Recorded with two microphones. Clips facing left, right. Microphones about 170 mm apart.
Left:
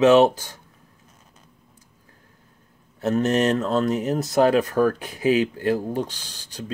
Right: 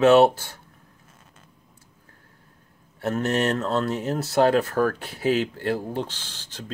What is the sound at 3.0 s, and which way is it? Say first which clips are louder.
Speech: left 3 dB; 20° left (ahead or behind).